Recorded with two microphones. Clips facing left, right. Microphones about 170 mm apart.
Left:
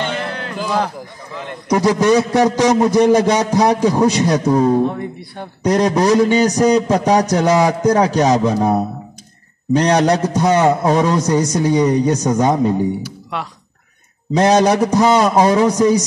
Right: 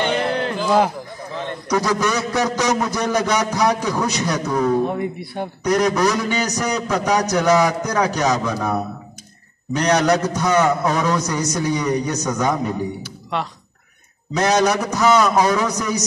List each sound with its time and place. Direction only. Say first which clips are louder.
1.7 s a man's voice: left 7 dB; 25° left (ahead or behind)
4.8 s speech: left 1 dB; 10° right (ahead or behind)
5.6 s a man's voice: left 3 dB; 30° left (ahead or behind)
13.0 s speech: even; 5° left (ahead or behind)
14.3 s a man's voice: left 5 dB; 30° left (ahead or behind)